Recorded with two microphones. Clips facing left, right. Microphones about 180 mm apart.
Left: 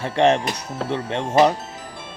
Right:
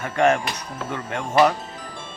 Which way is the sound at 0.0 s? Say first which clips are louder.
Left 2 dB; 30° left (ahead or behind).